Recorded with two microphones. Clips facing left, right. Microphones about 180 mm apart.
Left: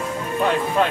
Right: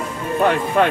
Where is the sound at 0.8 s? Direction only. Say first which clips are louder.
Right 4 dB; 65° right (ahead or behind).